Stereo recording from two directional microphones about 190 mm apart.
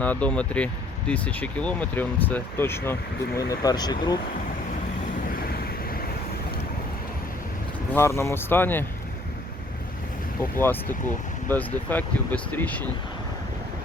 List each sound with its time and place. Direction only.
0.0 s speech: 5° left (ahead or behind)
5.3 s a sound: 50° left (ahead or behind)
7.9 s speech: 15° left (ahead or behind)
10.6 s speech: 10° left (ahead or behind)